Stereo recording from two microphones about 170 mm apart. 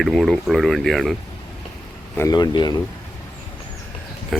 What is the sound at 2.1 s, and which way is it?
Speech, 20° left (ahead or behind).